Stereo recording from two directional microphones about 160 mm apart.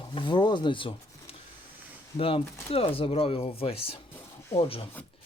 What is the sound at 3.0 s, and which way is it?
Speech, 35° left (ahead or behind).